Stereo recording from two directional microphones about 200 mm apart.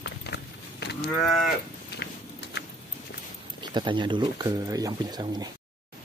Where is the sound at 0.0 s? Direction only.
55° left (ahead or behind).